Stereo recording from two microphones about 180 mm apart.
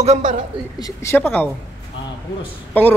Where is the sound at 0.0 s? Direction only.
40° right (ahead or behind).